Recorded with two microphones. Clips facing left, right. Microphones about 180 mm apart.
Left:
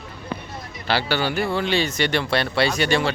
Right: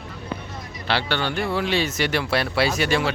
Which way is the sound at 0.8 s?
5° left (ahead or behind).